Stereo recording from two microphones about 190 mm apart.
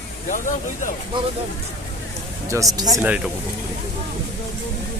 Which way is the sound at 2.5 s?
15° right (ahead or behind).